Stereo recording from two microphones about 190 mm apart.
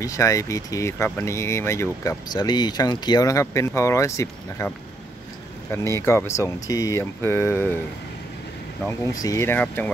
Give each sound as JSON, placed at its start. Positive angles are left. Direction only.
{"t": 0.0, "sound": "speech", "side_deg": 15}
{"t": 5.7, "sound": "speech", "side_deg": 15}
{"t": 8.8, "sound": "speech", "side_deg": 15}